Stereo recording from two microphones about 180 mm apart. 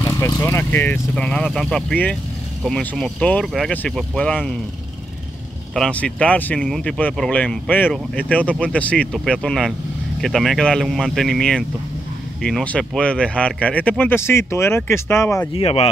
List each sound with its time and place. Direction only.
0.0 s speech: 15° left (ahead or behind)
5.8 s speech: 5° left (ahead or behind)
15.5 s speech: 35° left (ahead or behind)